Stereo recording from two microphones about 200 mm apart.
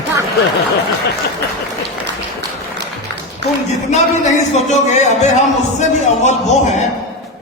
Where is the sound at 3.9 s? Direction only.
35° left (ahead or behind).